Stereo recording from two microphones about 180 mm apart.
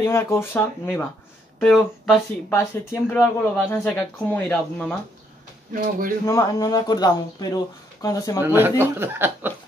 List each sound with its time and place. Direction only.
0.0 s speech: 15° left (ahead or behind)
2.5 s speech: 15° left (ahead or behind)
5.7 s speech: 50° right (ahead or behind)
6.2 s speech: 20° left (ahead or behind)
8.4 s speech: 10° right (ahead or behind)